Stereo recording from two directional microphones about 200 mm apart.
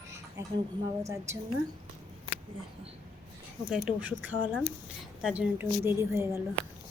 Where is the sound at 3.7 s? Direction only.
5° right (ahead or behind).